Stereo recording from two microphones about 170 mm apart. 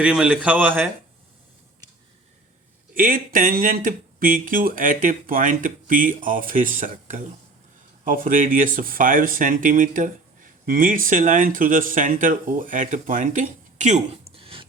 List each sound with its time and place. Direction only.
0.0 s a man's voice: 5° right (ahead or behind)
2.9 s speech: 55° right (ahead or behind); by 14.7 s 35° right (ahead or behind)